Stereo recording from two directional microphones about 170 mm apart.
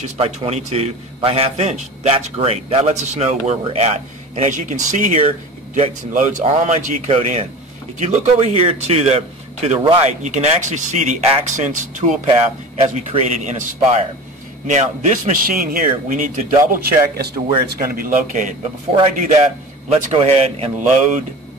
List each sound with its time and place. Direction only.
0.0 s a man's voice: 35° right (ahead or behind)
12.7 s a man's voice: 35° right (ahead or behind)
13.4 s speech: 45° right (ahead or behind)
20.1 s a man's voice: 35° right (ahead or behind)